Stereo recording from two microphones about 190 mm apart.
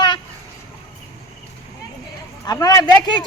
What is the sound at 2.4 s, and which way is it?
Speech, 20° left (ahead or behind).